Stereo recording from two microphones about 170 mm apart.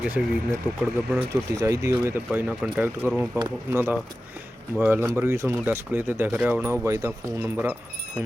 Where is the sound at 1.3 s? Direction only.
20° right (ahead or behind).